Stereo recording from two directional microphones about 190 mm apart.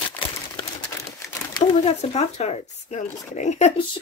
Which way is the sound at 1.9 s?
35° left (ahead or behind).